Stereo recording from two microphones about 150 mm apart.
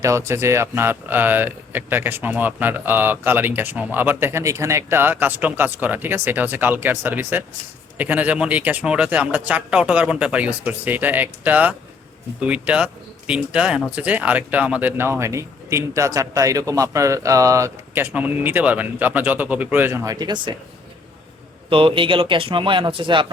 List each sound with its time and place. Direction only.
0.0 s speech: 20° right (ahead or behind)
20.1 s speech: 30° right (ahead or behind)
21.7 s speech: 35° right (ahead or behind)